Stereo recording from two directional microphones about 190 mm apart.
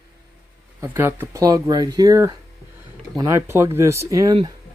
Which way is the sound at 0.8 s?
15° right (ahead or behind).